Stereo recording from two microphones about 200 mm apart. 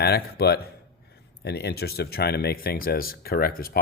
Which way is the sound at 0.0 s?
55° left (ahead or behind).